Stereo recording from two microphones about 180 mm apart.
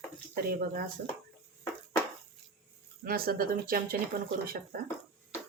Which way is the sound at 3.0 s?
55° right (ahead or behind).